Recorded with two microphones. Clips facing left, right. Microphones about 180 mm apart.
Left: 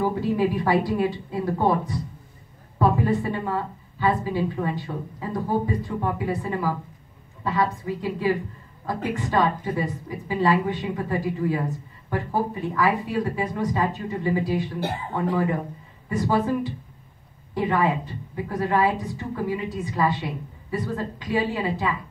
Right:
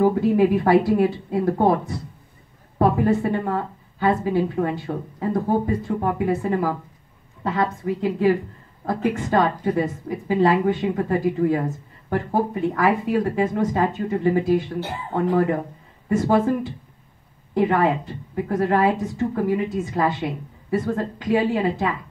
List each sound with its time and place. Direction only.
0.0 s a woman's voice: 55° right (ahead or behind)
2.8 s a woman's voice: 55° right (ahead or behind)
7.8 s a woman's voice: 55° right (ahead or behind)
17.6 s a woman's voice: 50° right (ahead or behind)